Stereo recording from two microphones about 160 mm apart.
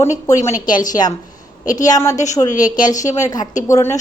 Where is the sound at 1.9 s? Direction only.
20° left (ahead or behind).